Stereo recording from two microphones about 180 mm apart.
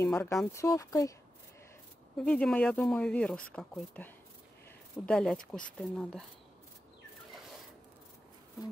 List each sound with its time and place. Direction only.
0.0 s speech: 15° left (ahead or behind)
2.1 s speech: 5° left (ahead or behind)